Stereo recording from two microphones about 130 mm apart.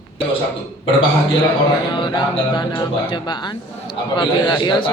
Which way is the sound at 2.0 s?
35° left (ahead or behind).